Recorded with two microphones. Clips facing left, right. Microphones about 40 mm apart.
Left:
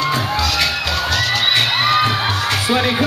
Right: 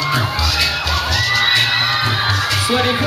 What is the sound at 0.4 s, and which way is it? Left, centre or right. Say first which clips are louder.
Music: left 1 dB; left.